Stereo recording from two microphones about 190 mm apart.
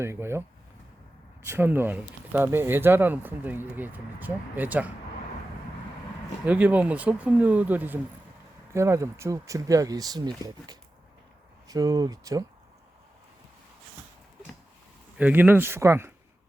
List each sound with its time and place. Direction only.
0.0 s speech: 15° right (ahead or behind)
1.5 s speech: 10° right (ahead or behind)
6.4 s speech: 10° right (ahead or behind)
15.2 s speech: 10° right (ahead or behind)